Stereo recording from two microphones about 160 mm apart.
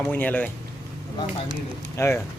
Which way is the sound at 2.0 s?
20° left (ahead or behind).